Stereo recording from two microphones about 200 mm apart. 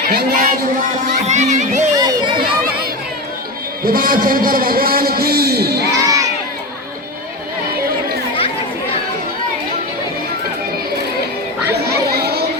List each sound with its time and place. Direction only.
0.1 s a man's voice: 50° right (ahead or behind)
2.0 s a sound: 20° right (ahead or behind)
3.8 s a man's voice: 45° right (ahead or behind)
6.0 s crowd: 15° right (ahead or behind)
11.7 s children playing: 50° right (ahead or behind)